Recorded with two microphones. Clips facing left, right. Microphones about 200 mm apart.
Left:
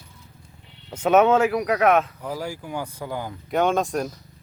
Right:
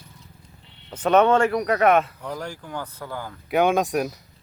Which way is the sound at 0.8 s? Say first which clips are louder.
Left 1 dB; 10° left (ahead or behind).